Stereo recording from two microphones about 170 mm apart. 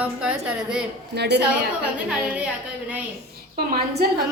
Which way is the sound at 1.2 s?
80° right.